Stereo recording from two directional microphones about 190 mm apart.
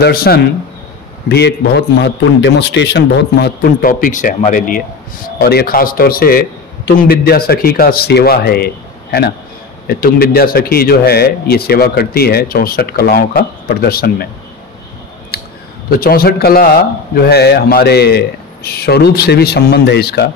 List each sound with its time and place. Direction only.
0.0 s speech: 55° left (ahead or behind)
2.0 s speech: 65° left (ahead or behind); by 4.8 s 45° left (ahead or behind)
5.4 s speech: 55° left (ahead or behind)
15.3 s a sound: 55° left (ahead or behind)
15.9 s speech: 50° left (ahead or behind)